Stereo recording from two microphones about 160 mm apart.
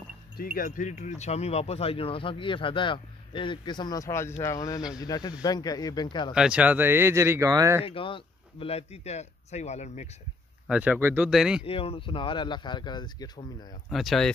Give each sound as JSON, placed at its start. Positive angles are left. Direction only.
{"t": 0.4, "sound": "speech", "side_deg": 60}
{"t": 6.3, "sound": "speech", "side_deg": -5}
{"t": 7.8, "sound": "speech", "side_deg": 35}
{"t": 10.7, "sound": "speech", "side_deg": -10}
{"t": 11.6, "sound": "speech", "side_deg": 35}
{"t": 13.8, "sound": "speech", "side_deg": 0}